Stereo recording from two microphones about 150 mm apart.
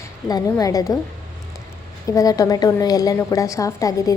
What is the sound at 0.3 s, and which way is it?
Speech, 25° left (ahead or behind).